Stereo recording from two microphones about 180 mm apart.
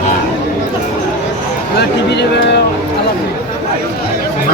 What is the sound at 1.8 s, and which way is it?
Speech, 70° left (ahead or behind).